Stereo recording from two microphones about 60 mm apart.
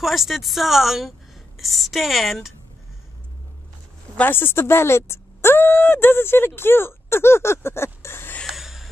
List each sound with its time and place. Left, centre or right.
0.0 s a woman's voice: centre
4.2 s speech: left
8.5 s a sound: centre